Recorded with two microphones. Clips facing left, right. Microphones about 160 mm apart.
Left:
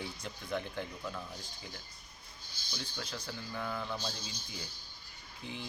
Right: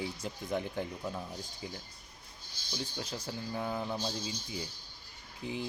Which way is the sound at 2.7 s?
25° right (ahead or behind).